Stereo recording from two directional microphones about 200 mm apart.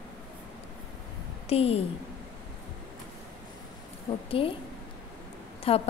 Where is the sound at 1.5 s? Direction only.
30° left (ahead or behind).